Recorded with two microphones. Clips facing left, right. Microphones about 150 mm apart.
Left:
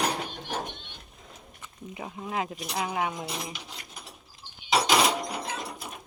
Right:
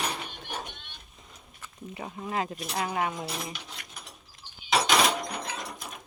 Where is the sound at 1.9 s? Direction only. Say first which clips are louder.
Even; 5° left (ahead or behind).